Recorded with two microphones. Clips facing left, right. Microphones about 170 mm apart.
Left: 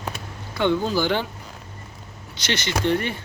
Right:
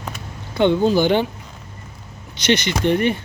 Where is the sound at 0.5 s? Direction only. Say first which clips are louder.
Right 6 dB; 20° right (ahead or behind).